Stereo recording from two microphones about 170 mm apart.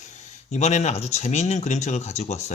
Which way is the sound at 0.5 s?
40° left (ahead or behind).